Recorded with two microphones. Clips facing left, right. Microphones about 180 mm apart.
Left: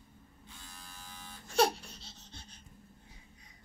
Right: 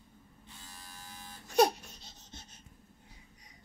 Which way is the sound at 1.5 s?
20° right (ahead or behind).